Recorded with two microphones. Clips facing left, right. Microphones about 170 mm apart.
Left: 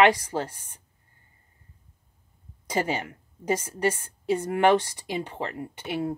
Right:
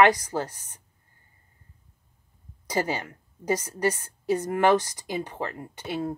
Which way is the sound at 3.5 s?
25° left (ahead or behind).